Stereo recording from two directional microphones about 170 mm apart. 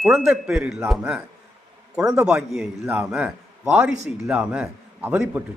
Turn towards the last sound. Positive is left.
turn(degrees=-10)  # may be behind; listen again after turning